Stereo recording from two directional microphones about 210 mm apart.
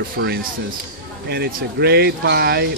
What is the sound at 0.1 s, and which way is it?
Speech, 45° right (ahead or behind).